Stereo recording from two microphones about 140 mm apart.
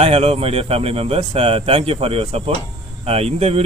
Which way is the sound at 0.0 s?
50° right (ahead or behind).